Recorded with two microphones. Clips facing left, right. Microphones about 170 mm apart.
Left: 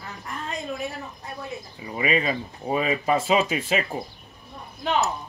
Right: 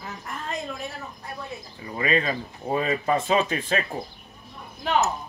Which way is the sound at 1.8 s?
10° left (ahead or behind).